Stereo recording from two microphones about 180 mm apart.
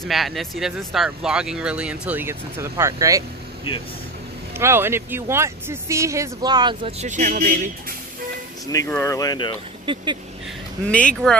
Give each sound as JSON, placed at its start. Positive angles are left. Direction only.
{"t": 0.0, "sound": "speech", "side_deg": 0}
{"t": 4.6, "sound": "speech", "side_deg": -15}
{"t": 7.1, "sound": "speech", "side_deg": -45}
{"t": 8.7, "sound": "speech", "side_deg": 15}
{"t": 9.9, "sound": "speech", "side_deg": -25}
{"t": 10.9, "sound": "speech", "side_deg": 5}